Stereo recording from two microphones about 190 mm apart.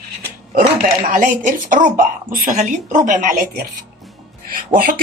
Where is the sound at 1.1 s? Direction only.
45° right (ahead or behind).